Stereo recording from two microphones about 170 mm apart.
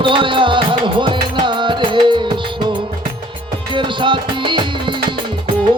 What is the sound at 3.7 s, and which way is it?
Music, 30° right (ahead or behind).